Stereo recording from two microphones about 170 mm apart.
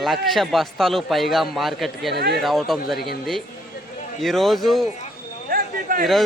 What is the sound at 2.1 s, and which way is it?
Speech, 75° right (ahead or behind).